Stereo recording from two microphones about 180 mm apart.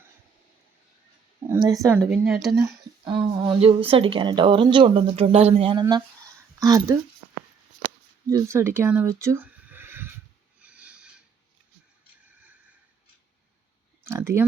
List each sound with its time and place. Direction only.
1.5 s speech: 20° right (ahead or behind)
2.0 s a woman's voice: centre (ahead or behind)
2.6 s speech: 20° right (ahead or behind)
6.6 s speech: 20° right (ahead or behind)
8.3 s speech: 15° right (ahead or behind)
10.6 s a sound: 5° right (ahead or behind)
14.0 s a sound: 15° right (ahead or behind)